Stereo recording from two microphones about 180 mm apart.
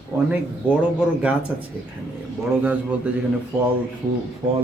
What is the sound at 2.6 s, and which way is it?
Speech, 10° right (ahead or behind).